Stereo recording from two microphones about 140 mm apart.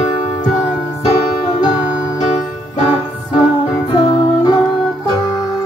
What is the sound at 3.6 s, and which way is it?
Music, 30° left (ahead or behind).